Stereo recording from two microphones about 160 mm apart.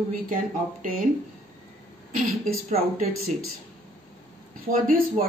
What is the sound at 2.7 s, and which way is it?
Speech, 55° right (ahead or behind).